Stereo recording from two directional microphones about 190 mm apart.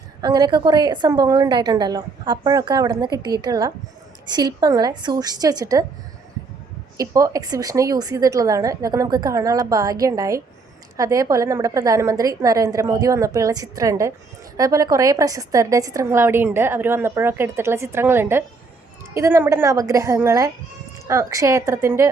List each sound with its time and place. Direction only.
0.2 s a woman's voice: 20° right (ahead or behind)
6.9 s a woman's voice: 20° right (ahead or behind)